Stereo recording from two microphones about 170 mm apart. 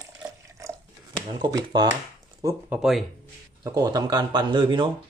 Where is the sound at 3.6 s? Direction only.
20° right (ahead or behind).